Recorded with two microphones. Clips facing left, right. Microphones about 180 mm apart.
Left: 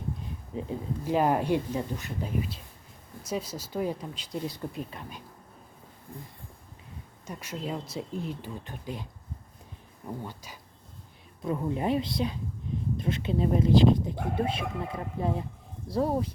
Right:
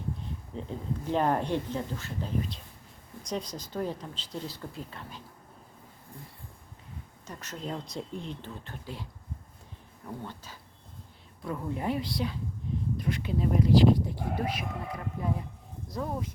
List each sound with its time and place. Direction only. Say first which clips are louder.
0.5 s speech: left 3 dB; 10° left (ahead or behind)
7.3 s speech: left 3 dB; 10° left (ahead or behind)
10.2 s speech: left 1 dB; 10° left (ahead or behind); by 16.3 s 35° left (ahead or behind)